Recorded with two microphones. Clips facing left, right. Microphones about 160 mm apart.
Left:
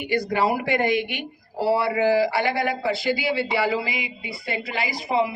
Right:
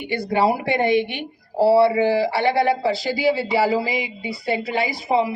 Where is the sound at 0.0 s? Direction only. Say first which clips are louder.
Right 2 dB; 30° right (ahead or behind).